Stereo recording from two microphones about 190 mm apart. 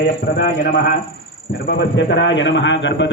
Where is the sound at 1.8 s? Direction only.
65° left (ahead or behind).